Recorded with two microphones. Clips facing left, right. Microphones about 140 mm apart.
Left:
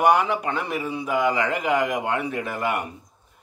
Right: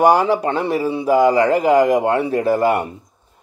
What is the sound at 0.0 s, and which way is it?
A man's voice, 35° right (ahead or behind).